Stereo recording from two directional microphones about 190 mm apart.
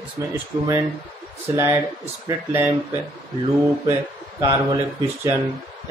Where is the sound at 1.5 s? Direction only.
15° right (ahead or behind).